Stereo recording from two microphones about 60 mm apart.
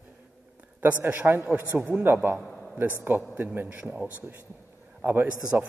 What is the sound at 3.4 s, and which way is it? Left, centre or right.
Speech, right.